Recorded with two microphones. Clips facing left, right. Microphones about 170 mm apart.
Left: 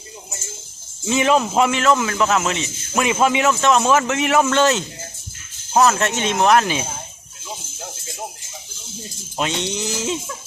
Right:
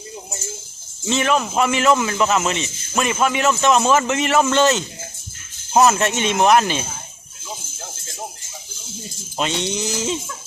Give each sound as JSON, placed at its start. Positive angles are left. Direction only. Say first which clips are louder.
{"t": 1.0, "sound": "a man's voice", "louder": "left 2 dB", "side_deg": 10}
{"t": 1.7, "sound": "a man's voice", "louder": "right 1 dB", "side_deg": -5}
{"t": 3.0, "sound": "speech", "louder": "left 2 dB", "side_deg": 15}
{"t": 3.5, "sound": "a man's voice", "louder": "even", "side_deg": -5}
{"t": 5.7, "sound": "a man's voice", "louder": "right 1 dB", "side_deg": -10}
{"t": 9.4, "sound": "a man's voice", "louder": "right 1 dB", "side_deg": 0}